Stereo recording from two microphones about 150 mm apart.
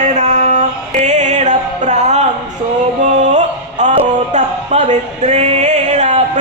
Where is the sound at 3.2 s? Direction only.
50° right (ahead or behind).